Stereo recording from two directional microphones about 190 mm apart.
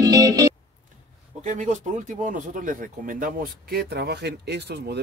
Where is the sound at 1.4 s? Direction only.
40° right (ahead or behind).